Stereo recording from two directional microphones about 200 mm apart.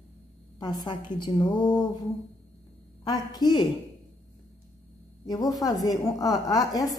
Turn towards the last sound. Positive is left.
turn(degrees=20)  # may be behind; listen again after turning